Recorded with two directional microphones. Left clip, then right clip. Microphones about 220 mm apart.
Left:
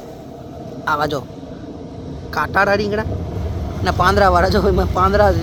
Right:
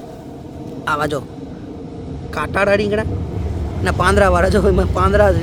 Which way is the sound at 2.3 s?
5° right (ahead or behind).